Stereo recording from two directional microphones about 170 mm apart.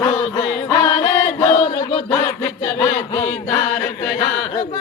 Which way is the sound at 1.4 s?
30° left (ahead or behind).